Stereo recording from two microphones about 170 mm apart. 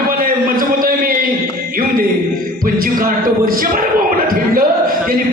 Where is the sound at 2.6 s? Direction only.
55° right (ahead or behind).